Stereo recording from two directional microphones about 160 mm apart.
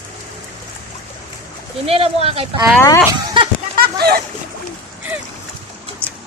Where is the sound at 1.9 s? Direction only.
35° right (ahead or behind).